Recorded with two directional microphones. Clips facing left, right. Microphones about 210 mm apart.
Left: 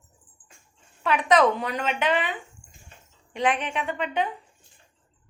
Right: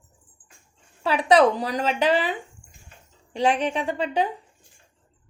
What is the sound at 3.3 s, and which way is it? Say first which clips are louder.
Speech: right 3 dB; 30° right (ahead or behind).